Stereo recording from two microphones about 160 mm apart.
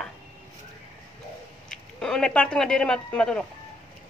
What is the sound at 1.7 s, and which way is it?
Speech, 5° left (ahead or behind).